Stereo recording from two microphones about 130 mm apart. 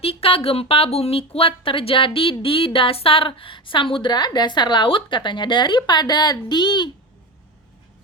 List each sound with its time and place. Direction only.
0.0 s a woman's voice: 45° left (ahead or behind)